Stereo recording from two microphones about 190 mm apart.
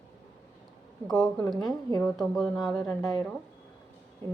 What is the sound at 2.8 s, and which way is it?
Speech, 20° left (ahead or behind).